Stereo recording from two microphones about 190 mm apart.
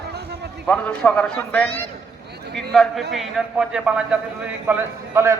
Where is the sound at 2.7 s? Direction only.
Centre (ahead or behind).